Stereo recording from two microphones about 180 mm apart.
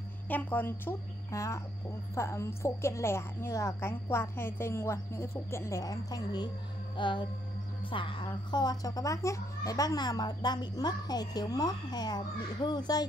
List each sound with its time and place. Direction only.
0.3 s a woman's voice: 10° left (ahead or behind)